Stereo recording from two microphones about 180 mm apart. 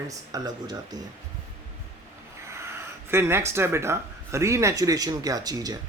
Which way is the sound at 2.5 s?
15° right (ahead or behind).